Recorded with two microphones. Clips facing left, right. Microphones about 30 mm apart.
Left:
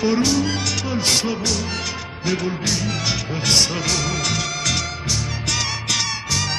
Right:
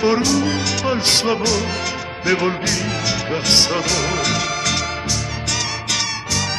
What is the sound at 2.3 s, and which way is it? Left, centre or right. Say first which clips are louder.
Music: right 4 dB; right.